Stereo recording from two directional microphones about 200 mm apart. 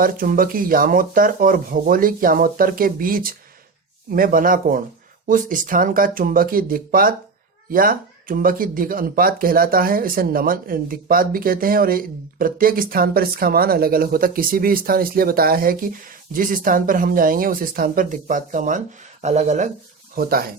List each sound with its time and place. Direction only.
0.0 s speech: 45° right (ahead or behind)
20.1 s speech: 45° right (ahead or behind)